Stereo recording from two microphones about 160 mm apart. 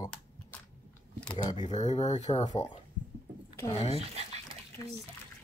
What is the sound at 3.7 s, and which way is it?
Speech, 40° left (ahead or behind).